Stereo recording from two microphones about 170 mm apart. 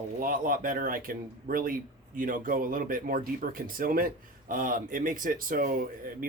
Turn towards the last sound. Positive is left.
turn(degrees=-55)  # may be behind; listen again after turning